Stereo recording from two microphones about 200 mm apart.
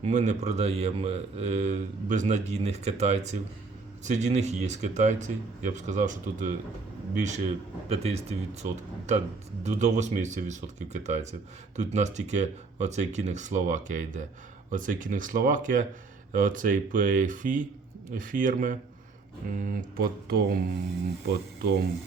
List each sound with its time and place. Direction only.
0.0 s speech: 35° right (ahead or behind)
21.6 s speech: 55° right (ahead or behind)